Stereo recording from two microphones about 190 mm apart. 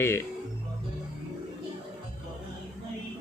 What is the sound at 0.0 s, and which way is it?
Speech, 15° left (ahead or behind).